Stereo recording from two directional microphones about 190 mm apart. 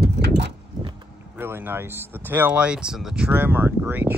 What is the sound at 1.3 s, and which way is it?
Speech, 10° right (ahead or behind).